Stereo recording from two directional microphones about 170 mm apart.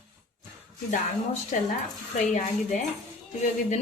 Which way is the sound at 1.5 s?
50° left (ahead or behind).